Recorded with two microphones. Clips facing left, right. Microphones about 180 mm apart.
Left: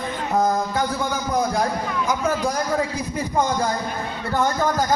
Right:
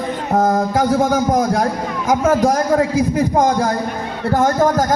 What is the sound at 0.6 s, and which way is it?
A man's voice, 90° right.